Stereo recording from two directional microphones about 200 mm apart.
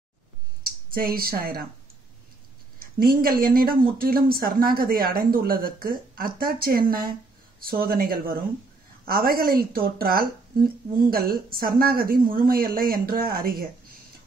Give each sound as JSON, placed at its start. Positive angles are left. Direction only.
{"t": 0.7, "sound": "speech", "side_deg": -45}
{"t": 2.8, "sound": "speech", "side_deg": -50}